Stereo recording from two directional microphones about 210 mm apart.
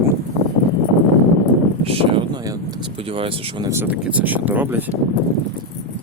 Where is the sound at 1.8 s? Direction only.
25° right (ahead or behind); by 4.9 s 10° right (ahead or behind).